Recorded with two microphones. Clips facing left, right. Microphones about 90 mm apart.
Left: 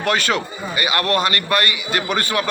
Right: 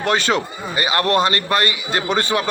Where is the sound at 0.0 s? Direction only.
25° right (ahead or behind).